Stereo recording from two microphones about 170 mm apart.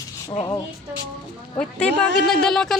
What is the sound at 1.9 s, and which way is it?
Speech, 90° right.